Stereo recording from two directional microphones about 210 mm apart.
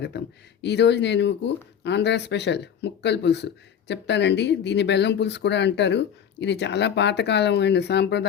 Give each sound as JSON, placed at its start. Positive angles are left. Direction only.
{"t": 0.1, "sound": "speech", "side_deg": 50}